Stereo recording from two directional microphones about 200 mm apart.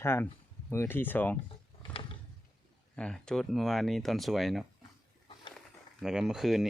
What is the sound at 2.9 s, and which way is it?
Speech, 5° left (ahead or behind).